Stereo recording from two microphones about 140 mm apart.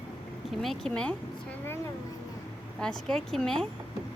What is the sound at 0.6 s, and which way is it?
Speech, centre (ahead or behind).